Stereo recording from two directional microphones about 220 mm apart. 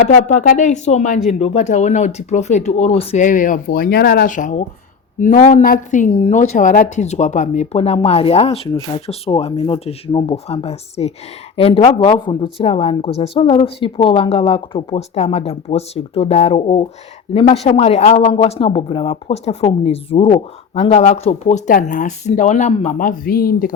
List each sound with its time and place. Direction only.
0.0 s speech: 35° left (ahead or behind)